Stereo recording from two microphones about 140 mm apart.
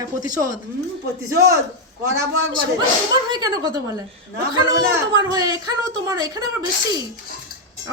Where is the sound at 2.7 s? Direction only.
30° right (ahead or behind).